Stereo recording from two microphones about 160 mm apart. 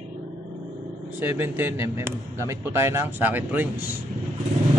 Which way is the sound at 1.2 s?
15° right (ahead or behind).